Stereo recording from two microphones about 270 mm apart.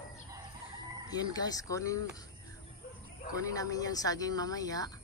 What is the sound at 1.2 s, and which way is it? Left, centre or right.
Speech, centre.